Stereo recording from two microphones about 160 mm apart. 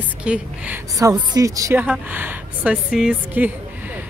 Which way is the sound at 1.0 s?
20° right (ahead or behind).